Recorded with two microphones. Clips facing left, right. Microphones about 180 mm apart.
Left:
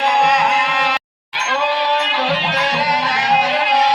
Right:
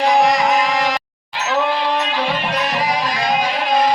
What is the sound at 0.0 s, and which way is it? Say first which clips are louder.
Music: right 1 dB; 60° left (ahead or behind).